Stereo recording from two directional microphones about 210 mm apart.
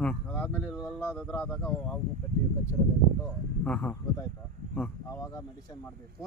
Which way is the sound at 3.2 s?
5° left (ahead or behind).